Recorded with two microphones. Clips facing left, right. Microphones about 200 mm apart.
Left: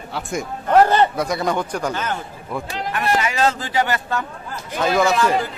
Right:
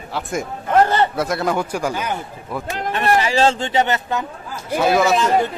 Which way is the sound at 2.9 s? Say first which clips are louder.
Right 4 dB; 30° right (ahead or behind).